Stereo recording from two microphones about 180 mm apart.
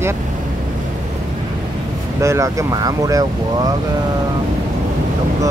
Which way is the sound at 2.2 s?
15° right (ahead or behind).